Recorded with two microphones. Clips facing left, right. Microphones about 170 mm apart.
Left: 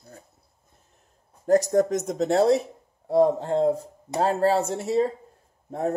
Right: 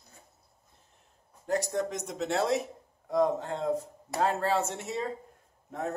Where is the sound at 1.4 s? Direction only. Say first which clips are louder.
Left 10 dB; 45° left (ahead or behind).